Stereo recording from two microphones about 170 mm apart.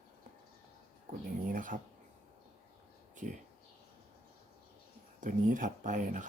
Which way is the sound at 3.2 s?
45° right (ahead or behind).